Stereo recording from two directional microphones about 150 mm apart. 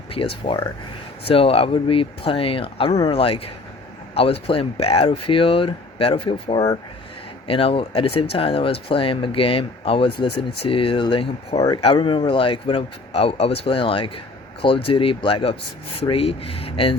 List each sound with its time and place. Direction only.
0.4 s speech: 35° left (ahead or behind)